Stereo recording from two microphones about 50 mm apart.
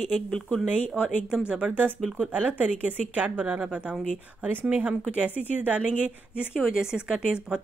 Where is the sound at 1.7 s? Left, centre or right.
Right.